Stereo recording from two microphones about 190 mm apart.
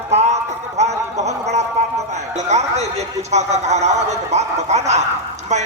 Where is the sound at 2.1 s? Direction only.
35° right (ahead or behind).